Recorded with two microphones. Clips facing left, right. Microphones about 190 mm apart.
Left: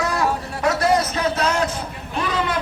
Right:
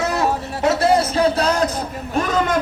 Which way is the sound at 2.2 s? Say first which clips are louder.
Right 4 dB; 45° right (ahead or behind).